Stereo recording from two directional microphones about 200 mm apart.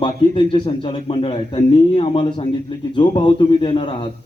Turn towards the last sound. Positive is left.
turn(degrees=25)  # may be behind; listen again after turning